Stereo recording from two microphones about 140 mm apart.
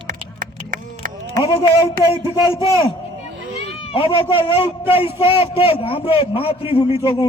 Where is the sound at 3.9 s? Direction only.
40° left (ahead or behind).